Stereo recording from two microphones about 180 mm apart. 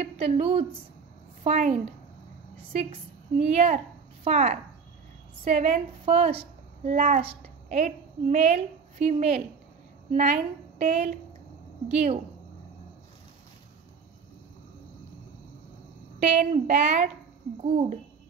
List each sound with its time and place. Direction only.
0.0 s a woman's voice: 35° right (ahead or behind)
16.3 s speech: 45° right (ahead or behind)